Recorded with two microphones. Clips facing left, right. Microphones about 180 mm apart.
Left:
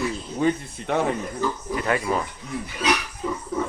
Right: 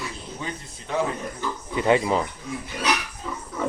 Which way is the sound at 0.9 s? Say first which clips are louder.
Left 2 dB; 65° left (ahead or behind).